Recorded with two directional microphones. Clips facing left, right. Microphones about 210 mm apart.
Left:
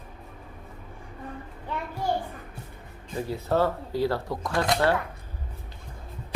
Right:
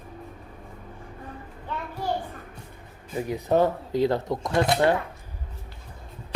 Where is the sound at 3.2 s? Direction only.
15° right (ahead or behind).